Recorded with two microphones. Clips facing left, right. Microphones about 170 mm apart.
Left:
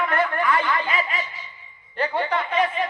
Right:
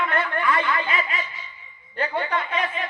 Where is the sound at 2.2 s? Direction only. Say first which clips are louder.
Left 6 dB; 40° left (ahead or behind).